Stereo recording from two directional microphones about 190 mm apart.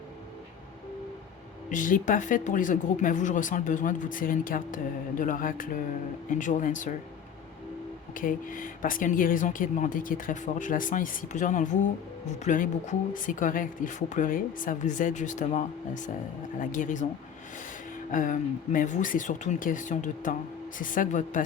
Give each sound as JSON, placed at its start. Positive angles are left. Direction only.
{"t": 1.7, "sound": "speech", "side_deg": 45}
{"t": 8.1, "sound": "speech", "side_deg": 45}